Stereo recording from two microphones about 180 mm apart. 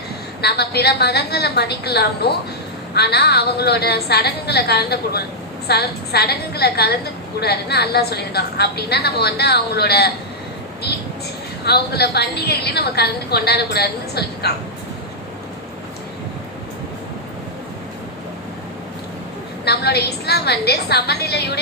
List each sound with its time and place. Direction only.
0.4 s a woman's voice: 65° left (ahead or behind)
11.6 s a woman's voice: 65° left (ahead or behind)
19.6 s a woman's voice: 65° left (ahead or behind)